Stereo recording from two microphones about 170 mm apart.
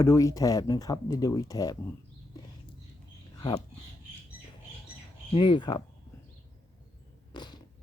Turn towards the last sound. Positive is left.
turn(degrees=25)  # may be behind; listen again after turning